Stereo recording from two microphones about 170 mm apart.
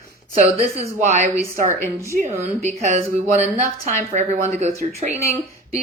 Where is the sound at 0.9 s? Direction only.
40° right (ahead or behind).